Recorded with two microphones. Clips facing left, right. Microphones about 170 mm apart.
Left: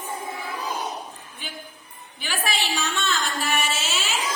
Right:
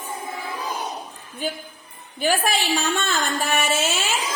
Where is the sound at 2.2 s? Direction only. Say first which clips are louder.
Right 7 dB; 50° right (ahead or behind).